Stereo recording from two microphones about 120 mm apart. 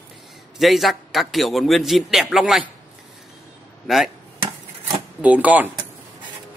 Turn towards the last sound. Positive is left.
turn(degrees=-10)  # may be behind; listen again after turning